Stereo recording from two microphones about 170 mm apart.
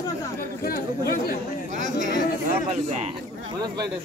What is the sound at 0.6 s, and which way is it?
Speech, 60° left (ahead or behind).